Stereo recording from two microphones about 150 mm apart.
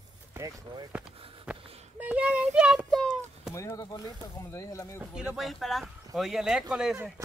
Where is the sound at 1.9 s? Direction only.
10° right (ahead or behind).